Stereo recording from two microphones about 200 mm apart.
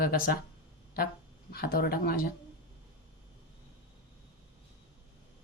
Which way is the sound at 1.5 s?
50° left (ahead or behind).